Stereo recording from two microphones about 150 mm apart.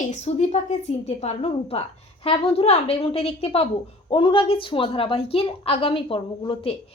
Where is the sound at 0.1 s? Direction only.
50° left (ahead or behind).